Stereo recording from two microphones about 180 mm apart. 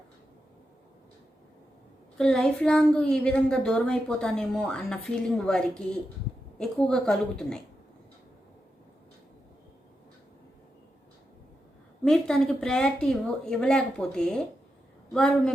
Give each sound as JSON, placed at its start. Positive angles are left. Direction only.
{"t": 2.1, "sound": "a child's voice", "side_deg": 5}
{"t": 12.0, "sound": "a child's voice", "side_deg": 0}